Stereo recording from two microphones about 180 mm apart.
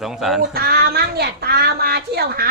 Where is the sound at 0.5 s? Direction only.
55° right (ahead or behind).